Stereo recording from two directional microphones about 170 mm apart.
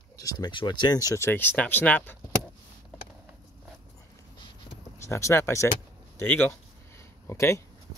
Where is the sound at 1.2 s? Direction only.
10° left (ahead or behind).